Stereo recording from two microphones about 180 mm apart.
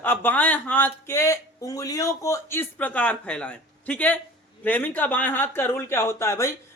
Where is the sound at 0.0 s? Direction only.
10° left (ahead or behind).